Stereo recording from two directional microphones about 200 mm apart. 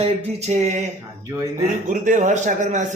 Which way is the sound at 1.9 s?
40° right (ahead or behind).